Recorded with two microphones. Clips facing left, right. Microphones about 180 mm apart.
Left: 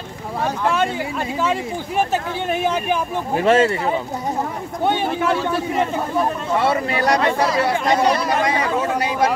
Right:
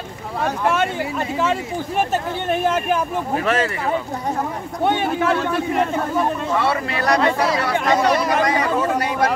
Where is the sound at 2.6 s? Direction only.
Centre (ahead or behind).